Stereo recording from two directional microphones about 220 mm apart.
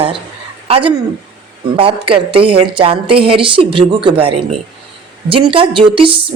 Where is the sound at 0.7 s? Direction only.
25° right (ahead or behind).